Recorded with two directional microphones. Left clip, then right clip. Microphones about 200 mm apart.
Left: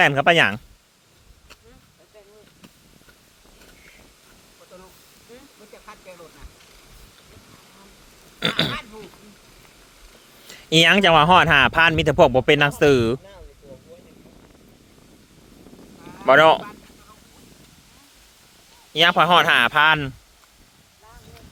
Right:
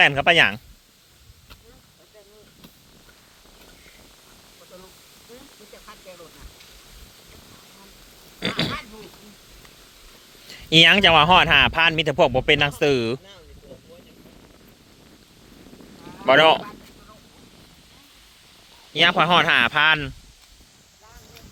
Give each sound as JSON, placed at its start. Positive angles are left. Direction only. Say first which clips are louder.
{"t": 0.0, "sound": "speech", "louder": "even", "side_deg": 20}
{"t": 8.4, "sound": "pig", "louder": "left 4 dB", "side_deg": 30}
{"t": 8.7, "sound": "a sound", "louder": "left 1 dB", "side_deg": 15}
{"t": 10.5, "sound": "speech", "louder": "right 1 dB", "side_deg": 20}
{"t": 15.9, "sound": "a sound", "louder": "even", "side_deg": 0}
{"t": 16.2, "sound": "speech", "louder": "left 2 dB", "side_deg": 20}
{"t": 18.9, "sound": "speech", "louder": "left 2 dB", "side_deg": 25}